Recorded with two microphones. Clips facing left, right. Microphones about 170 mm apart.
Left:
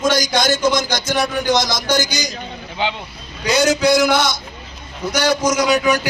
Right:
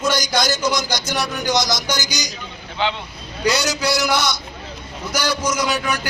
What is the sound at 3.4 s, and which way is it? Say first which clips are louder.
A man's voice: left 5 dB; 50° left (ahead or behind).